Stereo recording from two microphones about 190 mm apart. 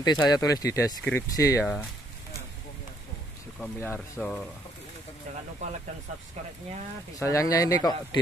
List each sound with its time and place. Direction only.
0.0 s speech: 20° left (ahead or behind)
3.6 s speech: 5° left (ahead or behind)
7.2 s speech: 15° left (ahead or behind)